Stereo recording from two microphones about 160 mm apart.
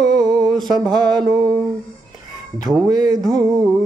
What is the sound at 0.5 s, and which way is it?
Speech, centre (ahead or behind).